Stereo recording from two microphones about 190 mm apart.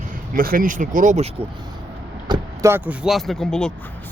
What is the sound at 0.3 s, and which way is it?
Speech, 50° right (ahead or behind).